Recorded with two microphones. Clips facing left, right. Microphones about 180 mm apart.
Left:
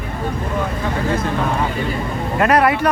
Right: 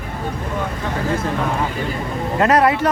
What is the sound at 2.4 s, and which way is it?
Speech, 20° right (ahead or behind).